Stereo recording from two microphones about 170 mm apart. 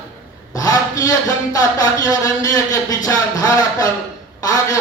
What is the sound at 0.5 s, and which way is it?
Speech, 20° left (ahead or behind).